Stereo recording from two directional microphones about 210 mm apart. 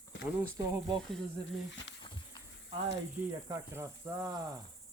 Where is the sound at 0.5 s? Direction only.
15° right (ahead or behind).